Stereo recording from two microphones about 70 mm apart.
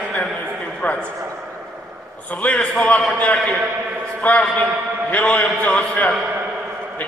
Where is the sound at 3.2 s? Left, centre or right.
Centre.